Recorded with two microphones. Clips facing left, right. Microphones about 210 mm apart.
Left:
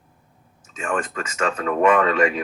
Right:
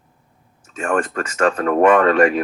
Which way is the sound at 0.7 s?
60° right (ahead or behind).